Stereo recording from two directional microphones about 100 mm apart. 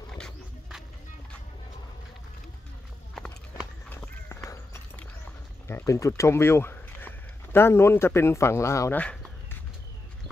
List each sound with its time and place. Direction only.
3.9 s run: 20° left (ahead or behind)
5.7 s speech: 30° left (ahead or behind)
8.9 s speech: 10° left (ahead or behind)